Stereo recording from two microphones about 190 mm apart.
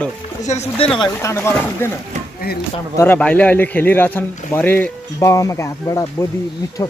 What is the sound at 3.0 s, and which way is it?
Speech, 10° left (ahead or behind).